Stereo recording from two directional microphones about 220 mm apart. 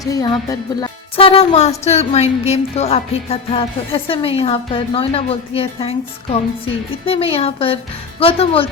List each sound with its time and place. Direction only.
0.0 s music: 15° left (ahead or behind)